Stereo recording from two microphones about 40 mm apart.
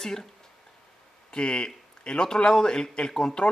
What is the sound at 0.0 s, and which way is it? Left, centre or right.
Speech, centre.